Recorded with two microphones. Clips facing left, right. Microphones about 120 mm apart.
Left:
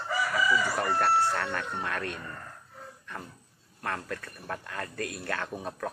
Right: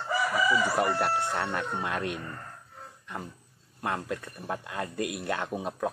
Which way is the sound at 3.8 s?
15° right (ahead or behind).